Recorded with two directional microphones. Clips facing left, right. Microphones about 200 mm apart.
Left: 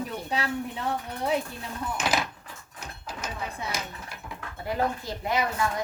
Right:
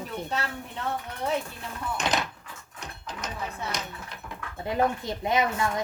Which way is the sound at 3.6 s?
5° left (ahead or behind).